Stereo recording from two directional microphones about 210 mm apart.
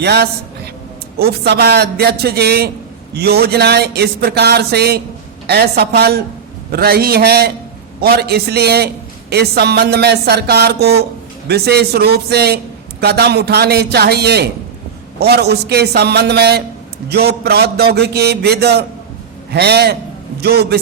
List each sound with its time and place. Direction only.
0.0 s a man's voice: 50° right (ahead or behind)